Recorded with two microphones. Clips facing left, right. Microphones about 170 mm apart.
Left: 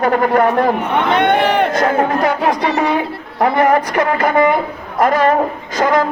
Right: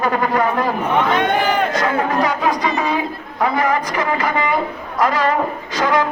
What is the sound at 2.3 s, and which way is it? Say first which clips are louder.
Speech: left 3 dB; 65° left (ahead or behind).